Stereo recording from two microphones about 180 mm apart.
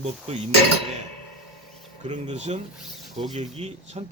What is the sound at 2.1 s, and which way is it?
Speech, 35° right (ahead or behind).